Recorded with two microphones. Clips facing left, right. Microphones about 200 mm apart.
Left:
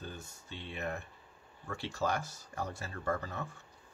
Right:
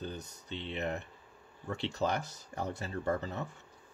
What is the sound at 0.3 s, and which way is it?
Speech, 20° right (ahead or behind).